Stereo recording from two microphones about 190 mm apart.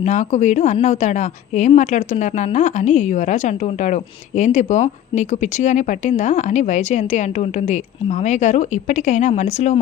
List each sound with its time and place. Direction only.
0.0 s speech: 40° left (ahead or behind)